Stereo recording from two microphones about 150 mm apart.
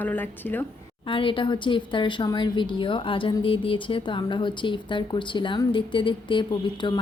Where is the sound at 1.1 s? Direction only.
35° left (ahead or behind).